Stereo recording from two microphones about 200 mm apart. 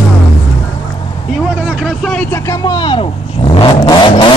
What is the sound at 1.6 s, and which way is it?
Speech, 5° right (ahead or behind).